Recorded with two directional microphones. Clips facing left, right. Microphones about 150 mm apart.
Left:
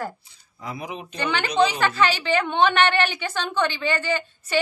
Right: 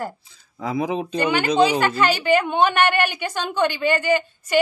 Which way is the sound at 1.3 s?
10° right (ahead or behind).